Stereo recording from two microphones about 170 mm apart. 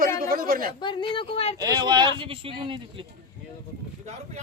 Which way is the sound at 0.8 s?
30° left (ahead or behind).